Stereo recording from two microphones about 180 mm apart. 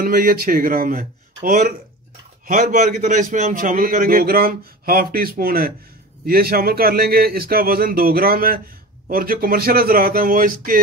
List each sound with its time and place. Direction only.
0.0 s a man's voice: 50° right (ahead or behind)